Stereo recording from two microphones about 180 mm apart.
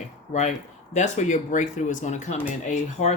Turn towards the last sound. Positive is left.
turn(degrees=40)  # may be behind; listen again after turning